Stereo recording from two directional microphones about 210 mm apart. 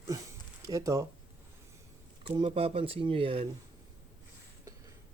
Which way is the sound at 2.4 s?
25° right (ahead or behind).